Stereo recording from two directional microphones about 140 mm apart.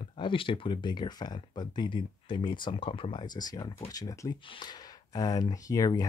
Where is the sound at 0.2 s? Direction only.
35° left (ahead or behind).